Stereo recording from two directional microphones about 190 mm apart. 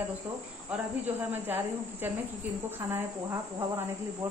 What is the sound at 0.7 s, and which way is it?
Speech, 5° right (ahead or behind).